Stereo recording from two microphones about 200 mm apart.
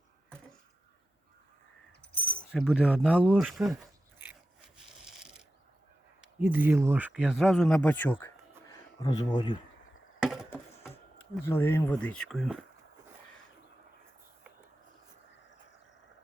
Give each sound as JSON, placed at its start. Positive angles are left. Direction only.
{"t": 2.1, "sound": "keys jangling", "side_deg": 5}
{"t": 2.5, "sound": "speech", "side_deg": -5}
{"t": 4.2, "sound": "a sound", "side_deg": 0}
{"t": 6.4, "sound": "speech", "side_deg": -10}
{"t": 8.2, "sound": "a sound", "side_deg": 20}
{"t": 10.2, "sound": "chop", "side_deg": 0}
{"t": 11.4, "sound": "speech", "side_deg": 10}